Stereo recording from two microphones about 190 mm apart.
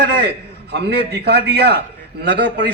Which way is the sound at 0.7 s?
60° right (ahead or behind).